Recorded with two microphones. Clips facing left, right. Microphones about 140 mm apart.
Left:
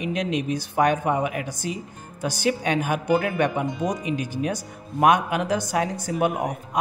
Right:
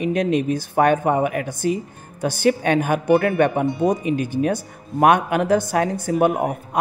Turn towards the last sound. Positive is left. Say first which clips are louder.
# right 4 dB
turn(degrees=-60)  # may be behind; listen again after turning